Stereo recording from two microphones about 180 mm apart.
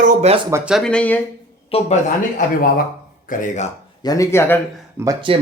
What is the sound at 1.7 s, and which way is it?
Speech, 35° left (ahead or behind).